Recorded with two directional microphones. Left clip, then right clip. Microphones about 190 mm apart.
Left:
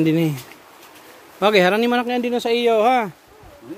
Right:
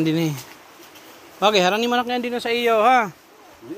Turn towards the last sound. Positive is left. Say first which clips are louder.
# even
turn(degrees=20)  # may be behind; listen again after turning